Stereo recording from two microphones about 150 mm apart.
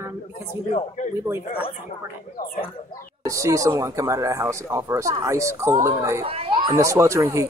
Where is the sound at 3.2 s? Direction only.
20° right (ahead or behind).